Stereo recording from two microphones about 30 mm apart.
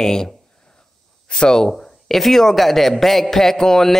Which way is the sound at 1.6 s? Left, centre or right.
Centre.